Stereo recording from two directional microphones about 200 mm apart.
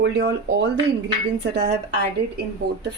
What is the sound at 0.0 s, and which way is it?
Speech, 55° right (ahead or behind).